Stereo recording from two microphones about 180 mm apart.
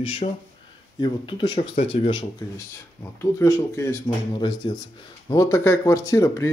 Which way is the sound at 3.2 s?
15° left (ahead or behind).